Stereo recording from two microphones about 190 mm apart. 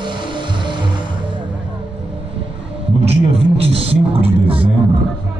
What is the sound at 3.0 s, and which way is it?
Music, 30° right (ahead or behind).